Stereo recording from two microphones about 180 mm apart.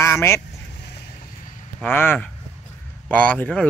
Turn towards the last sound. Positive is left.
turn(degrees=5)  # may be behind; listen again after turning